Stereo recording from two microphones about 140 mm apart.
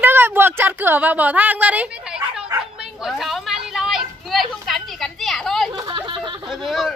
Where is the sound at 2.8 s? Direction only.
Centre (ahead or behind).